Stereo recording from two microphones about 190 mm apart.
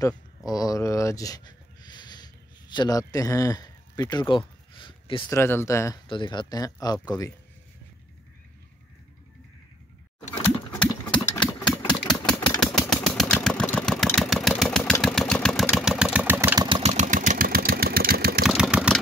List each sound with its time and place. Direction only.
0.5 s a sound: 20° left (ahead or behind)
5.3 s speech: 15° left (ahead or behind)
10.4 s sewing machine: 15° left (ahead or behind)
11.1 s engine: 25° left (ahead or behind)
12.2 s engine: 5° left (ahead or behind); by 16.6 s 10° right (ahead or behind)
16.6 s engine: 25° right (ahead or behind)
16.9 s engine: 40° right (ahead or behind)
18.4 s vehicle: 5° right (ahead or behind)